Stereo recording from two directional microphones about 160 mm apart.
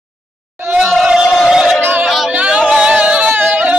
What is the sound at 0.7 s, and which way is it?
Crowd, 5° right (ahead or behind).